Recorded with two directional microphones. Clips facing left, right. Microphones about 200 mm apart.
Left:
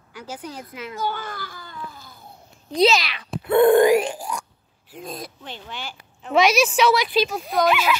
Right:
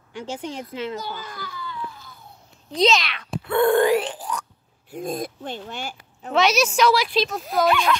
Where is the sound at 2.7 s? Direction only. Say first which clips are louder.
Left 2 dB; 5° left (ahead or behind).